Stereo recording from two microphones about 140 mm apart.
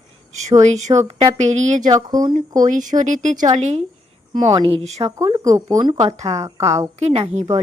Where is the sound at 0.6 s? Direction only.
55° right (ahead or behind).